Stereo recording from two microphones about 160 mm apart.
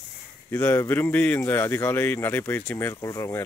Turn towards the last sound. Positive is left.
turn(degrees=20)  # may be behind; listen again after turning